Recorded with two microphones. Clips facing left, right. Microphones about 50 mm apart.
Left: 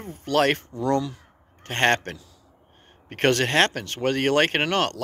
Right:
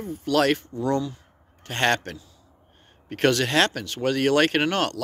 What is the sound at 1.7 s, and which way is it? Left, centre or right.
Speech, left.